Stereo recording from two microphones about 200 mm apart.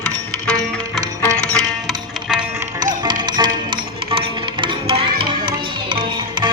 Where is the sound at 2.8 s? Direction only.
20° right (ahead or behind).